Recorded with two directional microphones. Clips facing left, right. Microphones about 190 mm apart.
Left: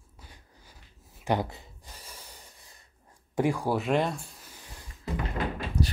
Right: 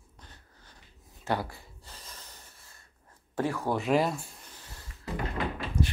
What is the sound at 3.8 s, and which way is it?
Speech, centre (ahead or behind).